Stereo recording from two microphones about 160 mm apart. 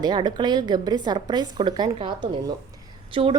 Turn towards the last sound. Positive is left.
turn(degrees=-30)  # may be behind; listen again after turning